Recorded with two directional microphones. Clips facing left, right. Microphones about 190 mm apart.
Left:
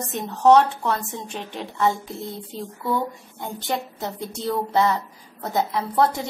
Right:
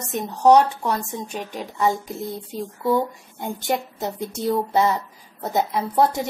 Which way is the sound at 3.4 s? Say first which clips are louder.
Right 3 dB; 20° right (ahead or behind).